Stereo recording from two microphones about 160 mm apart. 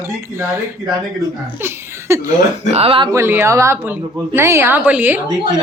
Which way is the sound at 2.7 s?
35° right (ahead or behind).